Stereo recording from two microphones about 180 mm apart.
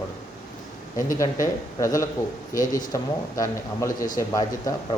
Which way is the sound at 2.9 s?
15° left (ahead or behind).